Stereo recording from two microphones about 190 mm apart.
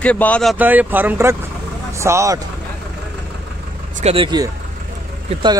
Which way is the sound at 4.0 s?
30° right (ahead or behind).